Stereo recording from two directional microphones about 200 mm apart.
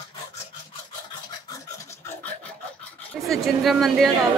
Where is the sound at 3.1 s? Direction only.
Centre (ahead or behind).